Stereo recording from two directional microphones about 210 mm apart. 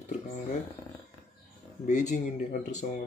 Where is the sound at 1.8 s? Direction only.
35° left (ahead or behind).